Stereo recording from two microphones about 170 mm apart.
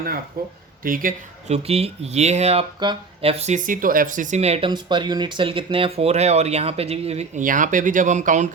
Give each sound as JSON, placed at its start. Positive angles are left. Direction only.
{"t": 0.4, "sound": "speech", "side_deg": -60}
{"t": 4.7, "sound": "speech", "side_deg": -25}